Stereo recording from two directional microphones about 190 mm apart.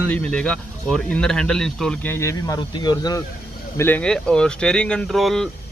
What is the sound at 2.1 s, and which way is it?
Speech, 15° left (ahead or behind).